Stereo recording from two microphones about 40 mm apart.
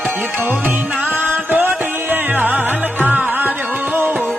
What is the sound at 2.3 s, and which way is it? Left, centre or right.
Music, right.